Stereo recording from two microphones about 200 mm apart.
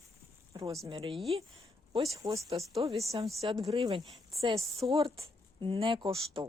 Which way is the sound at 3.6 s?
25° right (ahead or behind).